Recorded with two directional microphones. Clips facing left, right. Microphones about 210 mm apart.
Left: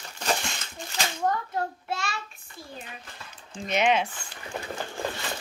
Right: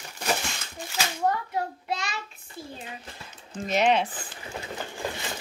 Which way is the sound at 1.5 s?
15° right (ahead or behind).